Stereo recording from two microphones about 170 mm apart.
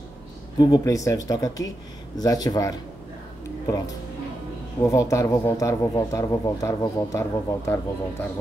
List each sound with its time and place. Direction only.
0.6 s a man's voice: 25° left (ahead or behind)